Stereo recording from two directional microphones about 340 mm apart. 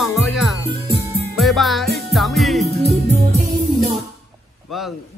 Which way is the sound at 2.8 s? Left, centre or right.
Centre.